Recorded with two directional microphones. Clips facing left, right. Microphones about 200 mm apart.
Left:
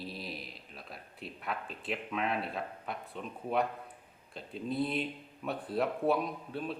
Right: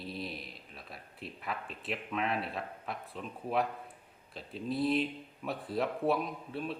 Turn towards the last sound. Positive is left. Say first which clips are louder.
# left 1 dB
turn(degrees=0)  # may be behind; listen again after turning